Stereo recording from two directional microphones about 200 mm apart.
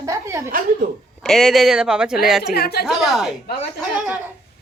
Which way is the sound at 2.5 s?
50° left (ahead or behind).